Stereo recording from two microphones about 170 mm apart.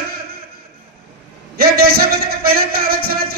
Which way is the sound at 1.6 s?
65° right (ahead or behind).